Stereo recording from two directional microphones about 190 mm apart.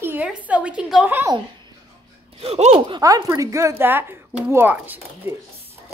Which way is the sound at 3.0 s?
15° right (ahead or behind).